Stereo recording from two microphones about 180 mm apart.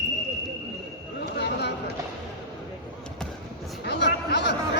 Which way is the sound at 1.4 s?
70° left (ahead or behind).